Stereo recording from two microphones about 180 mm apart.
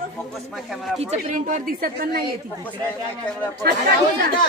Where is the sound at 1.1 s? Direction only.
40° right (ahead or behind).